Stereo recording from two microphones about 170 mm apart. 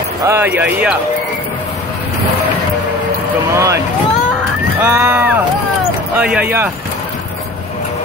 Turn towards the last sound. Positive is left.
turn(degrees=-10)  # may be behind; listen again after turning